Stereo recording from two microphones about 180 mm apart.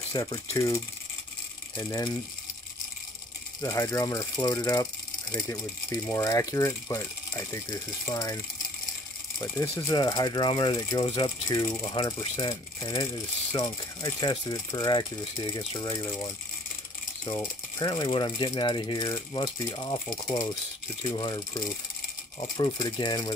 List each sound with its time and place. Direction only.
0.1 s speech: 20° left (ahead or behind)
1.8 s mechanisms: 20° left (ahead or behind)
3.6 s speech: 15° left (ahead or behind)
8.1 s mechanisms: 20° left (ahead or behind)
9.4 s mechanisms: 15° left (ahead or behind)
21.1 s mechanisms: 25° left (ahead or behind)